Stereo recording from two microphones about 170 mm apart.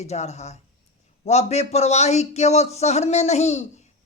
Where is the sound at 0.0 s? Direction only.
40° left (ahead or behind).